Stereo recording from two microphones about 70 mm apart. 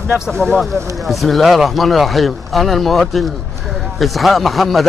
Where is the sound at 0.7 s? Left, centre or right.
Right.